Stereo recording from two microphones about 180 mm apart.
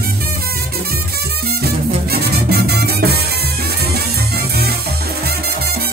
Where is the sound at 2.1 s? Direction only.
60° right (ahead or behind).